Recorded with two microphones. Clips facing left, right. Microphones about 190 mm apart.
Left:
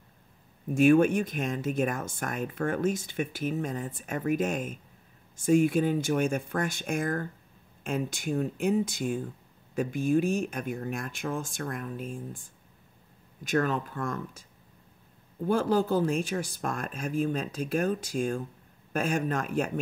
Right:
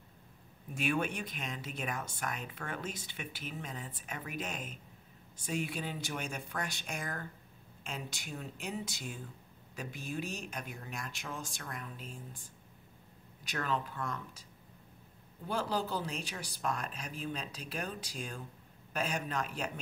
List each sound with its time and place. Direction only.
0.7 s speech: 45° left (ahead or behind)
15.4 s speech: 50° left (ahead or behind)